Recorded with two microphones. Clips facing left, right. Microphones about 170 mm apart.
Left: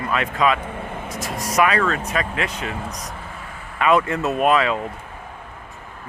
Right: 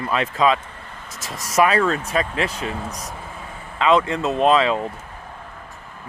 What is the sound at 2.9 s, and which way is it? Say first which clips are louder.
Speech: even; 5° right (ahead or behind).